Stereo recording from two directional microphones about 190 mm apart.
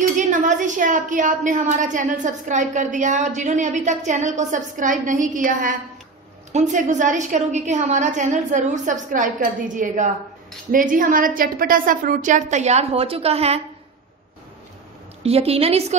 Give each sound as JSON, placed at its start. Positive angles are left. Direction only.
{"t": 0.0, "sound": "a woman's voice", "side_deg": -40}
{"t": 15.2, "sound": "a woman's voice", "side_deg": -30}